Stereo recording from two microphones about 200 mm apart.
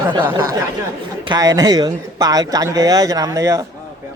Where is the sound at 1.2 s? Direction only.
15° right (ahead or behind).